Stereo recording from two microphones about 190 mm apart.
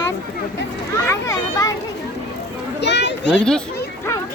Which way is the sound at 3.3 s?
5° left (ahead or behind).